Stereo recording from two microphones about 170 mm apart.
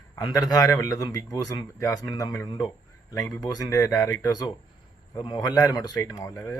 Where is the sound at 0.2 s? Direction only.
20° left (ahead or behind).